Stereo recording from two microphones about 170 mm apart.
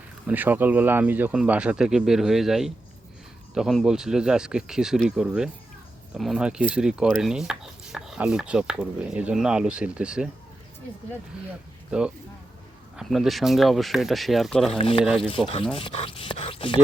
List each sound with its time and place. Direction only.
0.3 s stir: 10° right (ahead or behind)
11.9 s speech: 5° right (ahead or behind)
13.0 s stir: centre (ahead or behind)
14.8 s speech: 30° left (ahead or behind)
15.0 s stir: 5° right (ahead or behind)
15.3 s speech: 35° left (ahead or behind)